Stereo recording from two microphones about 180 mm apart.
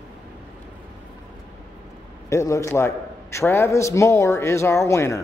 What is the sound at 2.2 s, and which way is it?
A man's voice, 15° left (ahead or behind).